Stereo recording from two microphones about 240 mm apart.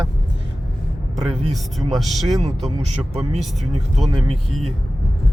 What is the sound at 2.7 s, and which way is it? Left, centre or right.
Speech, right.